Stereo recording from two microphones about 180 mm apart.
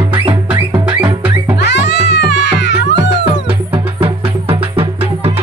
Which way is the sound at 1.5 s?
75° left (ahead or behind).